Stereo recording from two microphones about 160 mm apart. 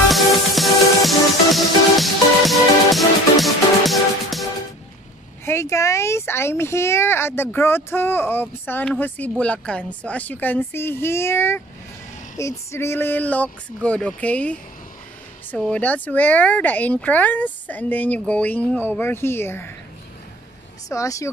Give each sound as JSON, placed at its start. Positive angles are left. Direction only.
{"t": 0.1, "sound": "music", "side_deg": 0}
{"t": 5.4, "sound": "speech", "side_deg": 15}
{"t": 20.9, "sound": "speech", "side_deg": 20}